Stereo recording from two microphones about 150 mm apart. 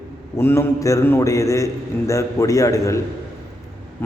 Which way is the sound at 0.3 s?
15° left (ahead or behind).